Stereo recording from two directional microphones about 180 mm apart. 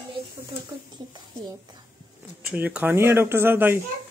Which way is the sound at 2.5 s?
10° right (ahead or behind).